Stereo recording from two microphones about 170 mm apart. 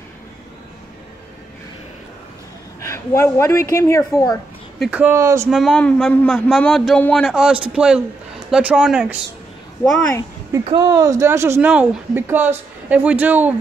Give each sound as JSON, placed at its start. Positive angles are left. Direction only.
{"t": 2.8, "sound": "a woman's voice", "side_deg": 15}
{"t": 4.7, "sound": "speech", "side_deg": -5}
{"t": 5.2, "sound": "speech", "side_deg": -20}
{"t": 5.5, "sound": "a man's voice", "side_deg": 5}
{"t": 10.6, "sound": "speech", "side_deg": -25}